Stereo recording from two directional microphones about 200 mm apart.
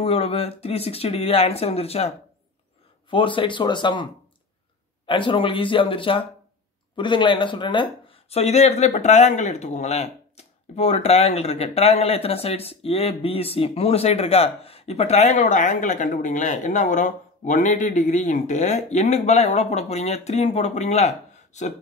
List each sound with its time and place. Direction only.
0.0 s speech: 30° left (ahead or behind)